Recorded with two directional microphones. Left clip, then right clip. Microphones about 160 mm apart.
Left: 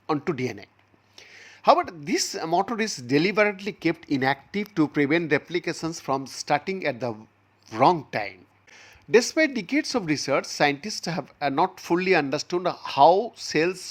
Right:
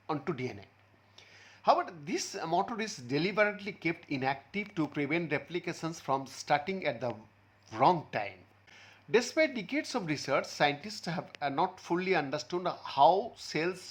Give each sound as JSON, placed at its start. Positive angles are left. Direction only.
{"t": 0.1, "sound": "speech", "side_deg": 45}